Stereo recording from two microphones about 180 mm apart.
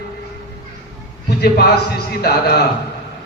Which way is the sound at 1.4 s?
60° left (ahead or behind).